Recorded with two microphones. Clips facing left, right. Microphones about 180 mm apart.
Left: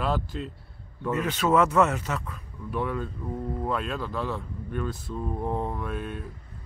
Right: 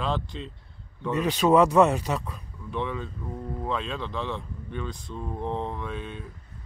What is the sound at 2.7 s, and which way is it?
Speech, 5° left (ahead or behind).